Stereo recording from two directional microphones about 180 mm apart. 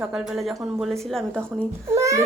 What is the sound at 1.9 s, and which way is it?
Speech, 15° right (ahead or behind).